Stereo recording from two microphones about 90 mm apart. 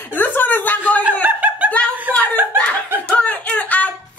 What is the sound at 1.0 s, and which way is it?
Snicker, 15° right (ahead or behind).